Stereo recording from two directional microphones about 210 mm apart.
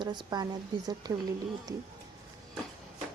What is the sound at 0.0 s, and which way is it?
Speech, 20° right (ahead or behind).